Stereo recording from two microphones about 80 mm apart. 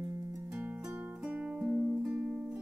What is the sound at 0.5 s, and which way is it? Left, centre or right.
Music, right.